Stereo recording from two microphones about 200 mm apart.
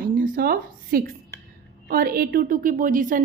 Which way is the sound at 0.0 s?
45° right (ahead or behind).